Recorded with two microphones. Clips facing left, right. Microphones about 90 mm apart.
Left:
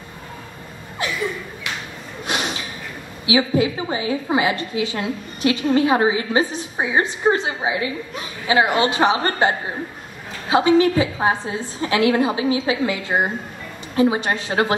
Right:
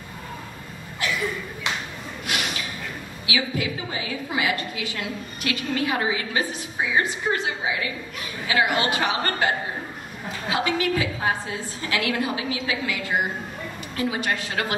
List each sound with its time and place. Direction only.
2.2 s snort: 25° left (ahead or behind)
3.3 s a woman's voice: 25° left (ahead or behind)